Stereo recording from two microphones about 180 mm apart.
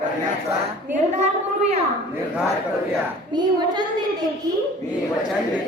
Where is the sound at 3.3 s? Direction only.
25° right (ahead or behind).